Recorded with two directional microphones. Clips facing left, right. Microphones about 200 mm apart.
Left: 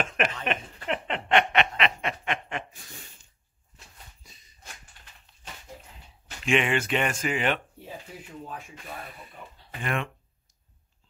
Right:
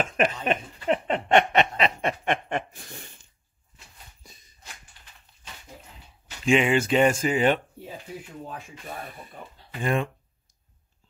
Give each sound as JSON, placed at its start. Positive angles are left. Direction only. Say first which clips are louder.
{"t": 0.2, "sound": "speech", "louder": "right 5 dB", "side_deg": -35}
{"t": 0.8, "sound": "snicker", "louder": "right 6 dB", "side_deg": -40}
{"t": 6.5, "sound": "speech", "louder": "right 4 dB", "side_deg": -25}
{"t": 9.8, "sound": "speech", "louder": "right 5 dB", "side_deg": -30}